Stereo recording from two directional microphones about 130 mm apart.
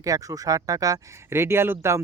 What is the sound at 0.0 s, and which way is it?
Speech, 25° right (ahead or behind).